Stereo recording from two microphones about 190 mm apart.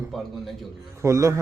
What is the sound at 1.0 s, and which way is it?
Speech, 15° right (ahead or behind).